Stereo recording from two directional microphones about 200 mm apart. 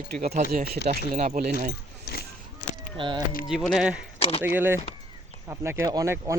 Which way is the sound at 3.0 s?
25° right (ahead or behind).